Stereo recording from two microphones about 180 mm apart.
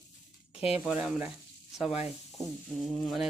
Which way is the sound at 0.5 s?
5° right (ahead or behind).